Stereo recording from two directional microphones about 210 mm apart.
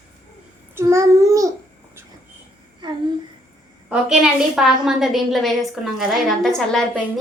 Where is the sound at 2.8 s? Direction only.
20° right (ahead or behind).